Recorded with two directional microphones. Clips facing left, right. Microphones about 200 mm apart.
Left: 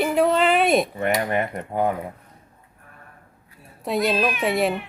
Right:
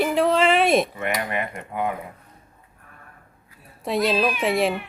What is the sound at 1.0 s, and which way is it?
Cutlery, 40° left (ahead or behind).